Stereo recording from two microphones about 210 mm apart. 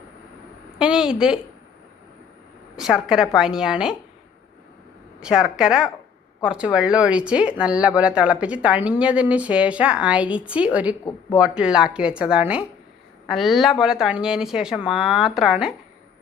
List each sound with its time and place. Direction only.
0.8 s a woman's voice: 5° right (ahead or behind)
2.7 s speech: centre (ahead or behind)
5.2 s speech: 5° right (ahead or behind)